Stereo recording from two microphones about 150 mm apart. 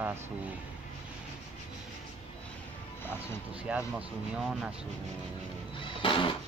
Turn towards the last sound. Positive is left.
turn(degrees=35)  # may be behind; listen again after turning